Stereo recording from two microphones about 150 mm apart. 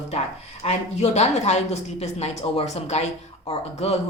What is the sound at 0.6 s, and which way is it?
A woman's voice, 45° left (ahead or behind).